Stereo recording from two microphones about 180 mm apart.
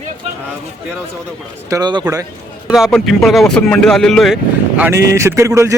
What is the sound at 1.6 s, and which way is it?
Speech, 20° right (ahead or behind).